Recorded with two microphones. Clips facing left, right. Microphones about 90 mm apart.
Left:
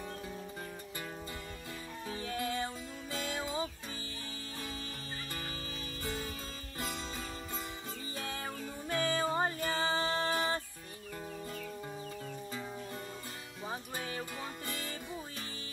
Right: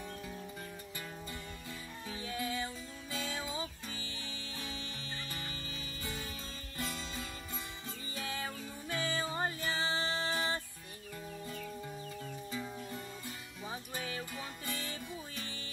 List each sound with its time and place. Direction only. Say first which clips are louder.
2.0 s music: left 2 dB; 45° left (ahead or behind)
8.3 s music: right 1 dB; 40° left (ahead or behind)
9.0 s music: left 4 dB; 50° left (ahead or behind)
13.7 s music: left 1 dB; 35° left (ahead or behind)